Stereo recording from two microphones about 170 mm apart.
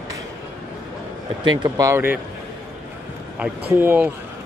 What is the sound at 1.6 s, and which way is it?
Speech, 20° right (ahead or behind).